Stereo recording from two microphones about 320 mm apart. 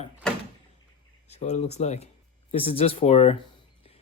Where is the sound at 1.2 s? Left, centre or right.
Centre.